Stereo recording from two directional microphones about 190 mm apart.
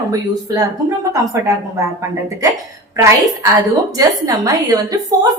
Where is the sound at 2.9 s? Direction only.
15° right (ahead or behind).